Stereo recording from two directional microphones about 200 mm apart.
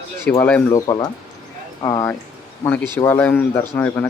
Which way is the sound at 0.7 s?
20° left (ahead or behind).